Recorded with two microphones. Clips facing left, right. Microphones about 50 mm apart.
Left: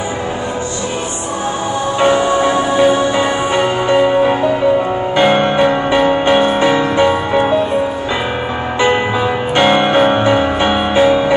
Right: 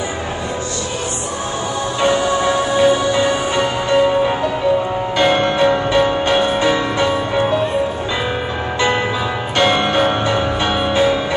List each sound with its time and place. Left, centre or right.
2.0 s music: left
8.7 s music: left